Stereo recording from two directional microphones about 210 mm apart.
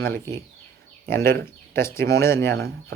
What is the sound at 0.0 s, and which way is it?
Speech, 10° left (ahead or behind).